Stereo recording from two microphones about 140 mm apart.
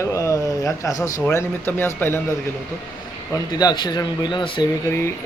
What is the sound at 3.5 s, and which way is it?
Speech, 30° left (ahead or behind).